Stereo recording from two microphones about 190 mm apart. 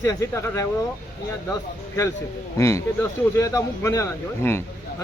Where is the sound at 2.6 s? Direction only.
15° left (ahead or behind).